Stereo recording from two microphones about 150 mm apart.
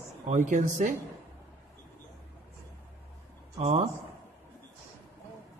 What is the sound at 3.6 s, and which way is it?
Speech, 45° right (ahead or behind).